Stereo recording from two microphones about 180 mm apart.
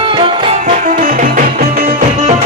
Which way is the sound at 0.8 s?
50° right (ahead or behind).